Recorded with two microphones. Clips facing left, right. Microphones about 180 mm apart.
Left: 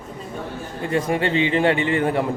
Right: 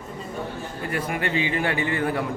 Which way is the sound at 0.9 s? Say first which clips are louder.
Left 6 dB; 25° left (ahead or behind).